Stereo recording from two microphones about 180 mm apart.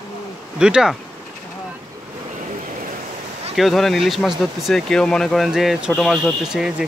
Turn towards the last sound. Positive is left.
turn(degrees=-5)  # may be behind; listen again after turning